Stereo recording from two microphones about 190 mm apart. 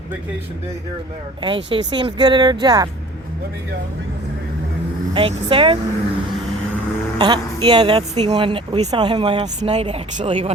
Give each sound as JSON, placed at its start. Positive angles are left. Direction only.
{"t": 1.4, "sound": "speech", "side_deg": -25}
{"t": 5.1, "sound": "speech", "side_deg": -30}
{"t": 7.2, "sound": "speech", "side_deg": -25}